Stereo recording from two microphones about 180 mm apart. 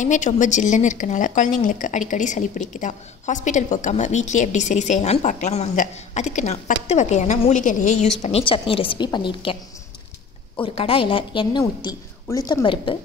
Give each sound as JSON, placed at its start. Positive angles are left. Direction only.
{"t": 0.0, "sound": "a woman's voice", "side_deg": 45}
{"t": 10.6, "sound": "a woman's voice", "side_deg": 30}